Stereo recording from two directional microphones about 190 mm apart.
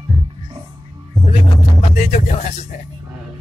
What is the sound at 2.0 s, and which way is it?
Speech, 40° left (ahead or behind).